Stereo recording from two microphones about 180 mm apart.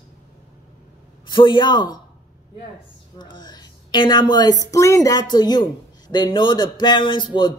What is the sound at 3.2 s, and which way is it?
A woman's voice, 25° left (ahead or behind).